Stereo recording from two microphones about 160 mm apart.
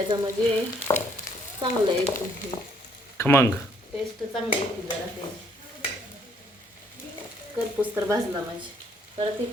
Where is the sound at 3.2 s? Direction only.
15° left (ahead or behind).